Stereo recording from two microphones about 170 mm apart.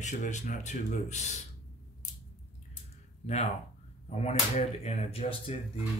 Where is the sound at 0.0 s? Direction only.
45° left (ahead or behind).